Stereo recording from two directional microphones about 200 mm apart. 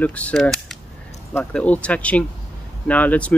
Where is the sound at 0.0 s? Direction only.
5° left (ahead or behind).